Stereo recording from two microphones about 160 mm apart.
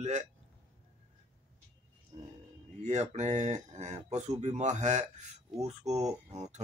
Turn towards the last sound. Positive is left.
turn(degrees=-45)  # may be behind; listen again after turning